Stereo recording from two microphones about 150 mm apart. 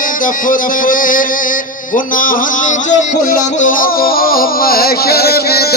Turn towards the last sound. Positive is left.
turn(degrees=90)